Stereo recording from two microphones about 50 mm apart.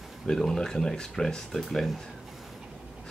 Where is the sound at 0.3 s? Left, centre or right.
Centre.